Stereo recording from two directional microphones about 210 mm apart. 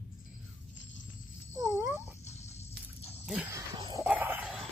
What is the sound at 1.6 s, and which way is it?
Cat, 5° right (ahead or behind).